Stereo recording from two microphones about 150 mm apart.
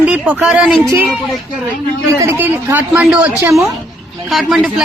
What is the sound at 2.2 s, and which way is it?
Speech, 15° right (ahead or behind).